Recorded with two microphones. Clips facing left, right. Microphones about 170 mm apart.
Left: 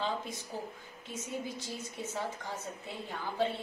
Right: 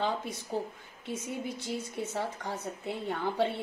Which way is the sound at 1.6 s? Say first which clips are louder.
Right 5 dB; 65° right (ahead or behind).